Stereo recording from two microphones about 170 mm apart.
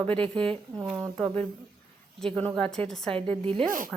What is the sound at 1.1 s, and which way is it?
A woman's voice, 5° left (ahead or behind).